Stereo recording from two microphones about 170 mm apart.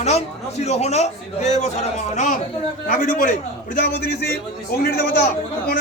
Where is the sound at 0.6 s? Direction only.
40° left (ahead or behind).